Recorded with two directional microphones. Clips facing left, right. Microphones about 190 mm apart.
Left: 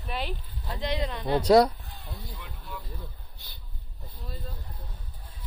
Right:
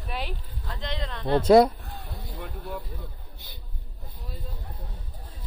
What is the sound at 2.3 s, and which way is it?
Vehicle, 50° right (ahead or behind).